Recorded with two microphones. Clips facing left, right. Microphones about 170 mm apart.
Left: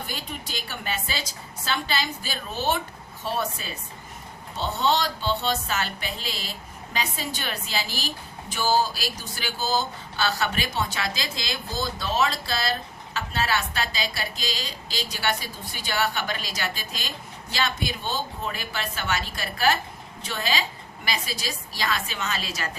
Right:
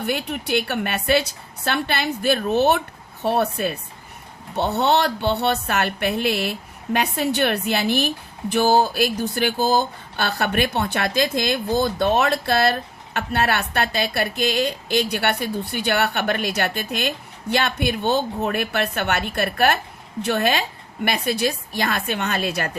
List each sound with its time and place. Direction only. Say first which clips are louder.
0.0 s speech: right 10 dB; 65° right (ahead or behind)